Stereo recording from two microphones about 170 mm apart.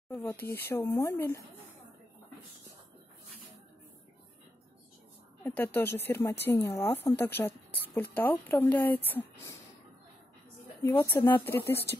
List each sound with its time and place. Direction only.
0.1 s speech: 15° left (ahead or behind)
5.4 s speech: 10° left (ahead or behind)
10.8 s speech: 15° left (ahead or behind)